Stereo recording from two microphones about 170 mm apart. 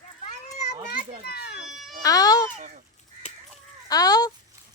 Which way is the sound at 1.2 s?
65° left (ahead or behind).